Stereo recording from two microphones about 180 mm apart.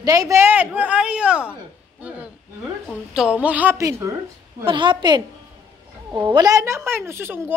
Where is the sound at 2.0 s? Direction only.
10° right (ahead or behind).